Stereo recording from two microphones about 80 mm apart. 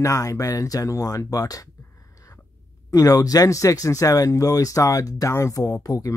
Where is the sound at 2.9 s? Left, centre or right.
Left.